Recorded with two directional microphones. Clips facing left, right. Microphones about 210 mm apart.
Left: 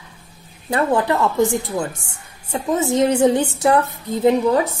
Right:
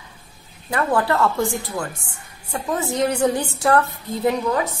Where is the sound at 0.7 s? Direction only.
25° left (ahead or behind).